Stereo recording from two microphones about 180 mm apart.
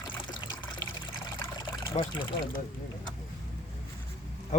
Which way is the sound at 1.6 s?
30° left (ahead or behind).